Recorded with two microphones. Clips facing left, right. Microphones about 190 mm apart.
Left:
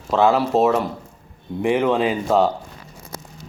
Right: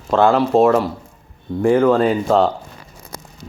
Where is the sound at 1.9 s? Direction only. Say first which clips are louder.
Right 4 dB; 5° left (ahead or behind).